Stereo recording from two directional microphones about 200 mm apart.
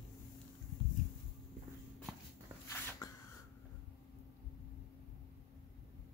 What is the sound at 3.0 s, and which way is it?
Spray, 15° left (ahead or behind).